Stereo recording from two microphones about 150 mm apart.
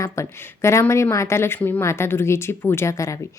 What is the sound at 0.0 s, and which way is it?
A woman's voice, 20° left (ahead or behind).